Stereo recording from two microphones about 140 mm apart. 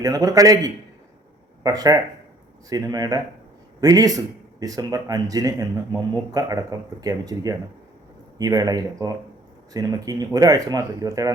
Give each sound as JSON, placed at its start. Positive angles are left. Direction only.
{"t": 0.0, "sound": "speech", "side_deg": -25}